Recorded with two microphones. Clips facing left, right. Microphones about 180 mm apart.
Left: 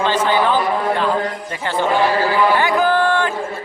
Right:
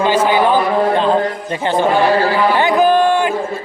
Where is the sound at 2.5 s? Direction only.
20° right (ahead or behind).